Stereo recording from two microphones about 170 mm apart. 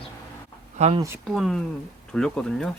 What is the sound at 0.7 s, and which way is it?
Speech, 40° right (ahead or behind).